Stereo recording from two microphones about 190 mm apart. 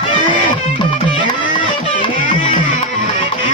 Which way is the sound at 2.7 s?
40° left (ahead or behind).